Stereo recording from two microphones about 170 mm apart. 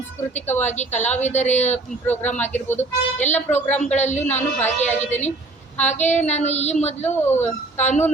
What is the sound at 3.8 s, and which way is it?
A woman's voice, 40° left (ahead or behind).